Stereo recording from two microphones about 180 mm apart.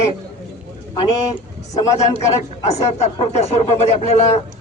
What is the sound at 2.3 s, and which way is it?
Speech, 40° left (ahead or behind).